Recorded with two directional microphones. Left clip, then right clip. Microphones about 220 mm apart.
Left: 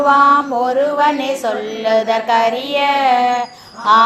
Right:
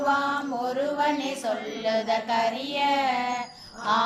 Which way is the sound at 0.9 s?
20° left (ahead or behind).